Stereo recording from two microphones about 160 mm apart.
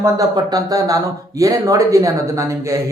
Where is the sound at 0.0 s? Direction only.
20° right (ahead or behind).